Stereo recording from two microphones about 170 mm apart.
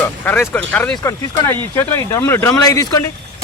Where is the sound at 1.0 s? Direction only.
20° left (ahead or behind).